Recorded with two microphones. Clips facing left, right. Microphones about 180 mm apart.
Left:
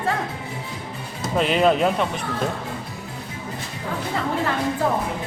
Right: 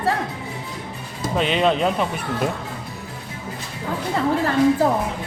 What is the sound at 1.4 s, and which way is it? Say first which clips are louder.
Speech: left 1 dB; 5° left (ahead or behind).